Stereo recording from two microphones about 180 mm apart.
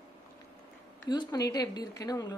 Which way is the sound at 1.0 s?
20° left (ahead or behind).